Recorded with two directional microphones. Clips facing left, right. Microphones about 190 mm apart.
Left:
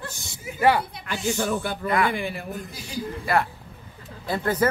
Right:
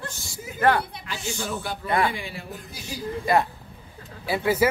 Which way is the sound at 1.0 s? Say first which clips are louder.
Left 6 dB; 55° left (ahead or behind).